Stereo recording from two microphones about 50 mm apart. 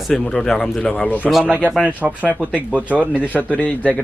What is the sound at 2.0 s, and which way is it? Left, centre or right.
Speech, right.